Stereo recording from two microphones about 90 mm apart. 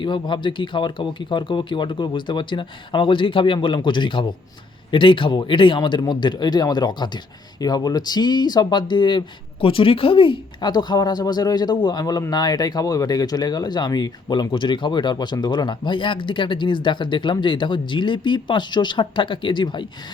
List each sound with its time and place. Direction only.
0.0 s speech: 60° left (ahead or behind); by 10.7 s 75° left (ahead or behind)
10.7 s speech: 50° left (ahead or behind)
14.5 s speech: 65° left (ahead or behind)